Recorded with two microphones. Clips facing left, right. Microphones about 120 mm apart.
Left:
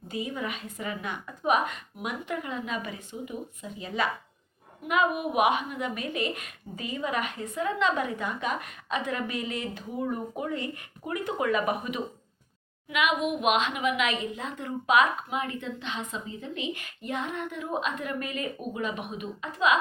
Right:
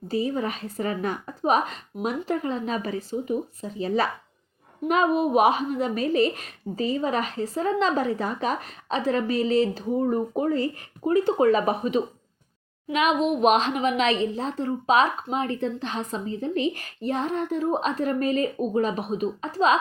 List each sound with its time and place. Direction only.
0.1 s a woman's voice: 35° right (ahead or behind)